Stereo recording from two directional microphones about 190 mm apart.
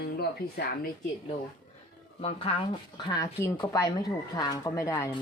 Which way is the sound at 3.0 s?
20° left (ahead or behind).